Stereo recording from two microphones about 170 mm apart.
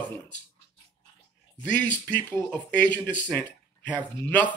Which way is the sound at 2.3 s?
10° left (ahead or behind).